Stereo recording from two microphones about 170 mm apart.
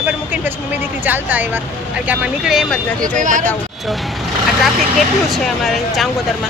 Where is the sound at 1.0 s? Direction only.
10° right (ahead or behind).